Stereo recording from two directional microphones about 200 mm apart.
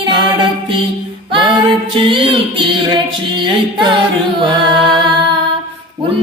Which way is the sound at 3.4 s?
25° right (ahead or behind).